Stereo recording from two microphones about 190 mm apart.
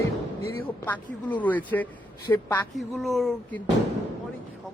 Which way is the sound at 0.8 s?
10° left (ahead or behind).